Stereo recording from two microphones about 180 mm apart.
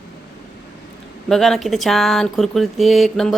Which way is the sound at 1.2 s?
Centre (ahead or behind).